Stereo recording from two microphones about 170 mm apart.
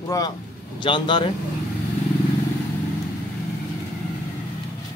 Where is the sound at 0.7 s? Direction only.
25° left (ahead or behind).